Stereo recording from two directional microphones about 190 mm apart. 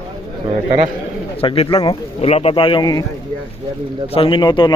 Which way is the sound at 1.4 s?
30° left (ahead or behind).